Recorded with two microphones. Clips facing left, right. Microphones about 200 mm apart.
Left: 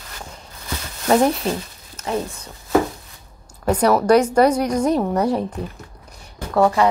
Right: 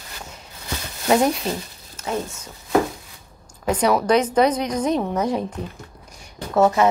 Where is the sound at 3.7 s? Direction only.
10° left (ahead or behind).